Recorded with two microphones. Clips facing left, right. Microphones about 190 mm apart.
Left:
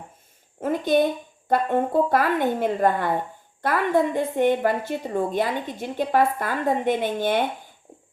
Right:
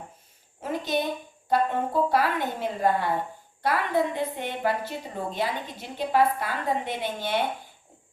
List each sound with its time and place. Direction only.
0.6 s a woman's voice: 50° left (ahead or behind)